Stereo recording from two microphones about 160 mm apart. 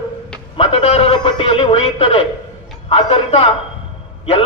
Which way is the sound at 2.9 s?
40° left (ahead or behind).